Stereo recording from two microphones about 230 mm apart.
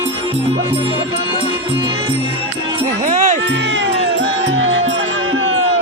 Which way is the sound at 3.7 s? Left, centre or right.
Right.